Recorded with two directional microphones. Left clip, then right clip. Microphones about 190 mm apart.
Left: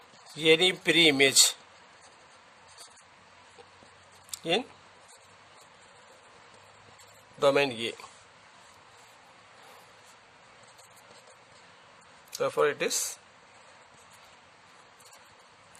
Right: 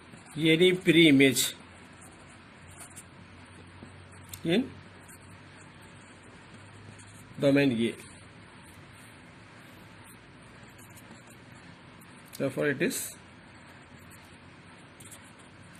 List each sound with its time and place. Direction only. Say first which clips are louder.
0.3 s speech: left 1 dB; 65° left (ahead or behind)
4.3 s a sound: even; 65° left (ahead or behind)
7.3 s speech: left 1 dB; 65° left (ahead or behind)
12.4 s speech: left 2 dB; 60° left (ahead or behind)